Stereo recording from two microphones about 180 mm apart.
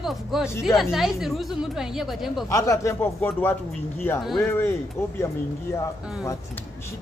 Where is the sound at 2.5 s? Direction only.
15° left (ahead or behind).